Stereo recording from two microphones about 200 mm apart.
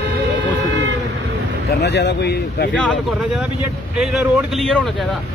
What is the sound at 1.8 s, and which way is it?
Speech, 60° left (ahead or behind).